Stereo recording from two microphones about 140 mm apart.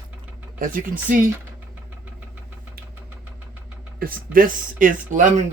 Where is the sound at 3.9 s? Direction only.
90° right; by 5.3 s 65° right (ahead or behind).